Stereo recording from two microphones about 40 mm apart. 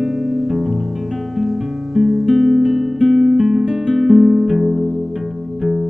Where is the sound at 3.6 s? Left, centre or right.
Right.